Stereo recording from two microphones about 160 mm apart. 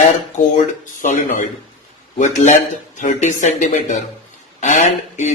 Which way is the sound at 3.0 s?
50° left (ahead or behind).